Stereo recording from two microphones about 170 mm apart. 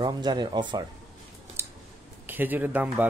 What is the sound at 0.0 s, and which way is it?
Speech, 25° right (ahead or behind).